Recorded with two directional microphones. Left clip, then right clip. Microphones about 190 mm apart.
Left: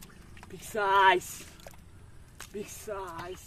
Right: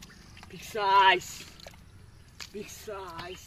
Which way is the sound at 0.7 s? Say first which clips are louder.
Right 1 dB; 15° left (ahead or behind).